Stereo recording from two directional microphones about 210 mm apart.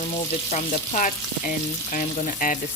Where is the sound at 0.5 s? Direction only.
40° left (ahead or behind).